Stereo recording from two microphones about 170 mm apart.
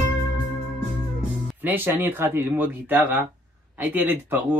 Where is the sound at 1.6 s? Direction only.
10° right (ahead or behind).